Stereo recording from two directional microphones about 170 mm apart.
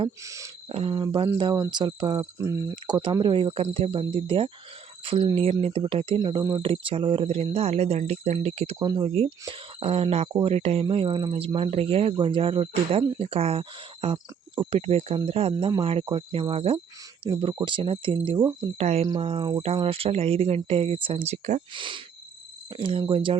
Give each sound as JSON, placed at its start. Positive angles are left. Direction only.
{"t": 0.2, "sound": "speech", "side_deg": -20}
{"t": 0.7, "sound": "speech", "side_deg": -35}
{"t": 21.7, "sound": "speech", "side_deg": -30}